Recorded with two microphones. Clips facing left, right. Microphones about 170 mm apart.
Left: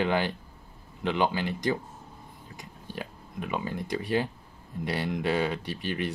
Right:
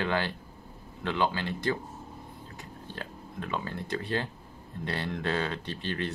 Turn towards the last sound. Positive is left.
turn(degrees=15)  # may be behind; listen again after turning